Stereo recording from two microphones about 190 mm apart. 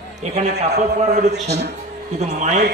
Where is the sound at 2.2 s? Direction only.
35° right (ahead or behind).